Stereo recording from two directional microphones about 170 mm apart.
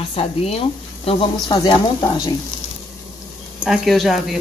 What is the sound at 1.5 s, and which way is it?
Speech, 25° left (ahead or behind).